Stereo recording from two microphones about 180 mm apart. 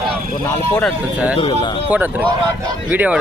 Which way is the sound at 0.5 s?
10° left (ahead or behind).